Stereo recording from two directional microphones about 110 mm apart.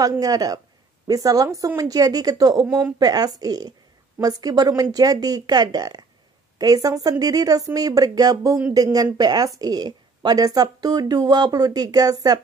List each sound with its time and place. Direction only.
0.2 s speech: 35° right (ahead or behind)
2.6 s speech: 20° right (ahead or behind)
3.0 s speech: 35° right (ahead or behind)